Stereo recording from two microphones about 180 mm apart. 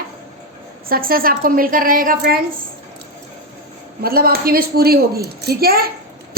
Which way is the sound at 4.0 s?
55° right (ahead or behind).